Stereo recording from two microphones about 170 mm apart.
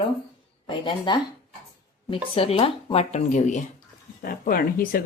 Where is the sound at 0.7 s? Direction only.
25° left (ahead or behind).